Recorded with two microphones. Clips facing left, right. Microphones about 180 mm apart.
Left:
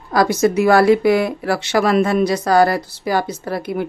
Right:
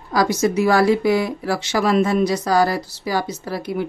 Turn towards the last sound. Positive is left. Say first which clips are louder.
# left 2 dB
turn(degrees=55)  # may be behind; listen again after turning